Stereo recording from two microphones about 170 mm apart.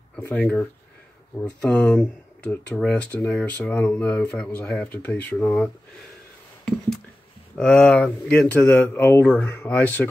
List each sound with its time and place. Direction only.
0.2 s speech: 10° left (ahead or behind)
7.5 s speech: 5° left (ahead or behind)